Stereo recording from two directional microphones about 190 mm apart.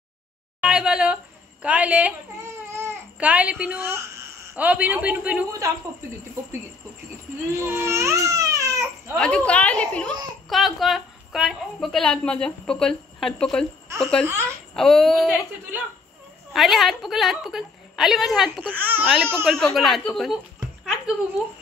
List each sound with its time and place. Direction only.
0.6 s a sound: 5° right (ahead or behind)
2.7 s a man's voice: 10° right (ahead or behind)
7.5 s baby cry: 10° right (ahead or behind)
9.2 s a woman's voice: 5° left (ahead or behind)
13.8 s speech: 15° right (ahead or behind)
14.4 s a woman's voice: centre (ahead or behind)
18.8 s a man's voice: 10° right (ahead or behind)
19.4 s a woman's voice: centre (ahead or behind)
20.8 s a sound: 5° right (ahead or behind)